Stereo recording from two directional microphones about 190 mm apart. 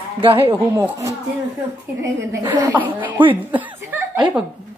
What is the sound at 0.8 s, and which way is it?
A woman's voice, 15° right (ahead or behind).